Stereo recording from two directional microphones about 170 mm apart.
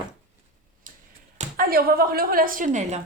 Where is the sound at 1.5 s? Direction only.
60° right (ahead or behind).